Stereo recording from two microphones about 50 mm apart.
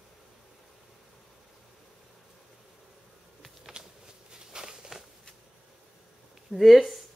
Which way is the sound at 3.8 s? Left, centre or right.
Centre.